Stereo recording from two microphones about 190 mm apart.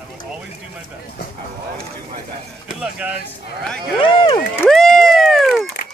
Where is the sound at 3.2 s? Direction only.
5° left (ahead or behind).